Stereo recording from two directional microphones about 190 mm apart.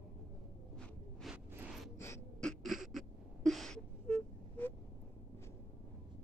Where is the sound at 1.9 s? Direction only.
15° left (ahead or behind).